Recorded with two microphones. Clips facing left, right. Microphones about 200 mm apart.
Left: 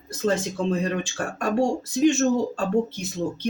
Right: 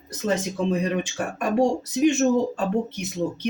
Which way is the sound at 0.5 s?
15° right (ahead or behind).